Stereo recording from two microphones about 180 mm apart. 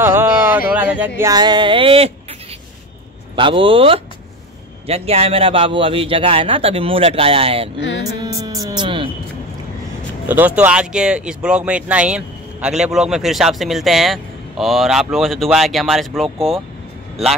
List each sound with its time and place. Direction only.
0.0 s a sound: 10° right (ahead or behind)
0.7 s speech: 10° right (ahead or behind); by 2.1 s 30° right (ahead or behind)
3.3 s a man's voice: 30° right (ahead or behind)
8.0 s music: 20° right (ahead or behind)
10.2 s speech: 10° right (ahead or behind)